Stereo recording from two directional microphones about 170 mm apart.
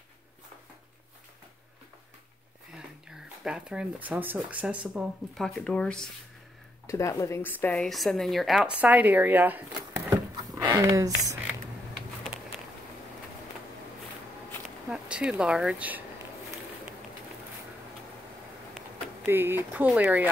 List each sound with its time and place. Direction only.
2.7 s speech: 5° right (ahead or behind)
6.9 s a woman's voice: 15° left (ahead or behind); by 9.7 s 10° right (ahead or behind)
10.5 s speech: 25° right (ahead or behind)
14.9 s speech: 5° right (ahead or behind)
19.2 s speech: 15° right (ahead or behind)